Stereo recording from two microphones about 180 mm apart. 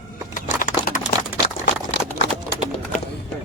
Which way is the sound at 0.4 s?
45° left (ahead or behind).